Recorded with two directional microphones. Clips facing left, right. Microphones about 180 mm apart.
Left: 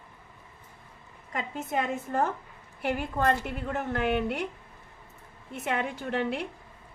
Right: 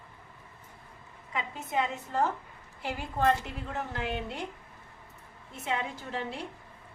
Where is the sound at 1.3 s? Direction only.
50° left (ahead or behind); by 4.5 s 65° left (ahead or behind).